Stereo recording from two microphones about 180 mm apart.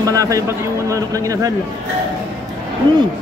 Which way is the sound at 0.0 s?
20° right (ahead or behind).